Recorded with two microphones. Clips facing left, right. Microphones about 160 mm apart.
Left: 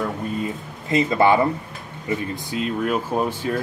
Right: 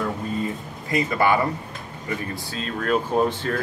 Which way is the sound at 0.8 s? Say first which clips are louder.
Left 4 dB; 25° left (ahead or behind).